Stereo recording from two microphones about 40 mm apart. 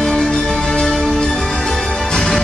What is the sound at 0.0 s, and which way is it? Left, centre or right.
Music, centre.